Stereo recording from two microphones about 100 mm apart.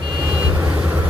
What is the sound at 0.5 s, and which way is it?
Vehicle, 20° right (ahead or behind).